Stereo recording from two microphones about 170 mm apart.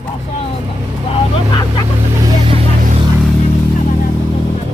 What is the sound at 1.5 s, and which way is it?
Speech, 25° left (ahead or behind).